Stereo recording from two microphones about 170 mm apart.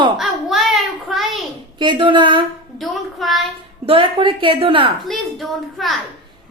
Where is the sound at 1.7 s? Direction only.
30° right (ahead or behind).